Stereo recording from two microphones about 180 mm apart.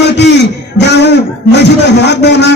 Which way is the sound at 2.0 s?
70° left (ahead or behind).